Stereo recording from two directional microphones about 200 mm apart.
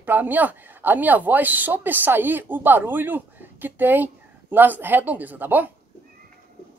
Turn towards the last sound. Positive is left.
turn(degrees=-10)  # may be behind; listen again after turning